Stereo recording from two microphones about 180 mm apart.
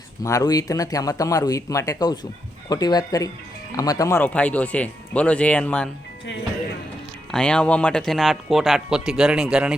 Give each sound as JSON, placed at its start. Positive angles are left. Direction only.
{"t": 0.2, "sound": "speech", "side_deg": 20}
{"t": 7.3, "sound": "speech", "side_deg": 5}